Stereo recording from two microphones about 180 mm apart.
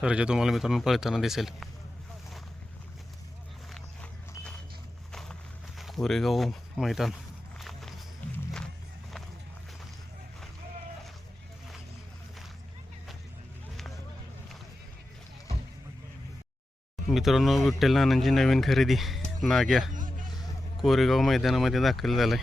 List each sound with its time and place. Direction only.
0.0 s speech: 5° right (ahead or behind)
3.7 s vehicle: 5° left (ahead or behind)
5.1 s a sound: centre (ahead or behind)
7.6 s walk: centre (ahead or behind)
8.2 s music: 10° left (ahead or behind)
17.1 s speech: centre (ahead or behind)
19.9 s a sound: 45° right (ahead or behind)
20.8 s speech: centre (ahead or behind)